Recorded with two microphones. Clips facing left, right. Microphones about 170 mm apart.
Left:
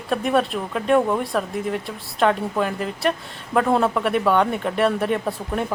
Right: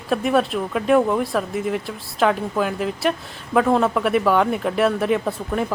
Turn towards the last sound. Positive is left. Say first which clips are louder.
# right 2 dB
turn(degrees=0)  # may be behind; listen again after turning